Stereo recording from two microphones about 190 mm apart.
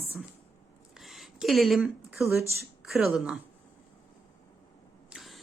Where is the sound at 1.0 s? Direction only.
Centre (ahead or behind).